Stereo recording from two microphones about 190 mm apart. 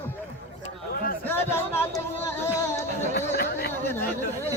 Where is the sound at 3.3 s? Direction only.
55° left (ahead or behind).